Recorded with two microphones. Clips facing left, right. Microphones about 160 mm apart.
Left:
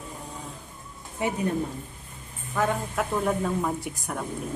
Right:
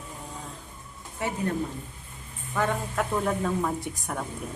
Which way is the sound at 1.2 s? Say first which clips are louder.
Left 3 dB; 15° left (ahead or behind).